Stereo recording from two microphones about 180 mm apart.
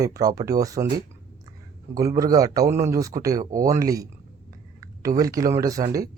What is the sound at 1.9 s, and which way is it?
Speech, 20° right (ahead or behind).